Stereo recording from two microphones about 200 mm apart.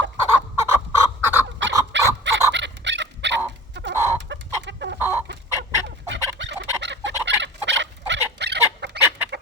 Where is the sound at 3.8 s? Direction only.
60° right (ahead or behind).